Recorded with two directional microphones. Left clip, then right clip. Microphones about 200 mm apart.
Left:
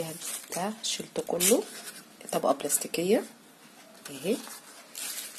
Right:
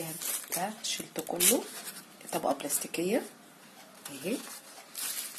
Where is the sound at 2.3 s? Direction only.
35° left (ahead or behind).